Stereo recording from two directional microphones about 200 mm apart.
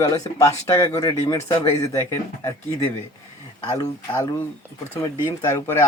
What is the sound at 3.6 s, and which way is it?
Speech, 15° left (ahead or behind).